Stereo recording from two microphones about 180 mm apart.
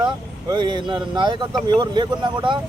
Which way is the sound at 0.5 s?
25° right (ahead or behind).